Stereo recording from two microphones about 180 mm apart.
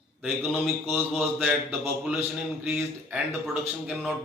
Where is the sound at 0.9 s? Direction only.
Centre (ahead or behind).